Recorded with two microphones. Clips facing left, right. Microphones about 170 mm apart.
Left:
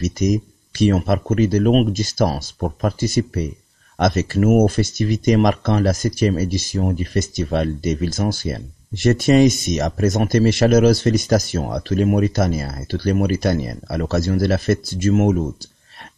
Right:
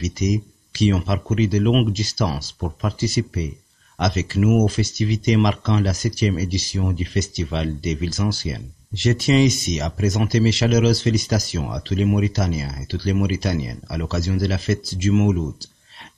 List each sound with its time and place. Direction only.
0.0 s speech: 50° left (ahead or behind)